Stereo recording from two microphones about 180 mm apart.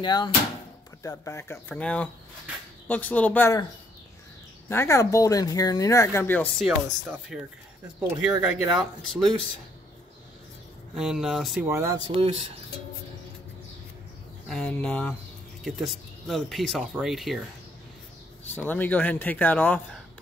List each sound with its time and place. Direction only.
0.0 s speech: 25° left (ahead or behind)
4.6 s speech: 15° left (ahead or behind)
7.3 s speech: 5° right (ahead or behind)
11.0 s speech: 5° right (ahead or behind)
11.6 s speech: 15° right (ahead or behind)
12.1 s speech: 30° right (ahead or behind)
14.5 s speech: 5° left (ahead or behind)
18.7 s speech: 10° left (ahead or behind)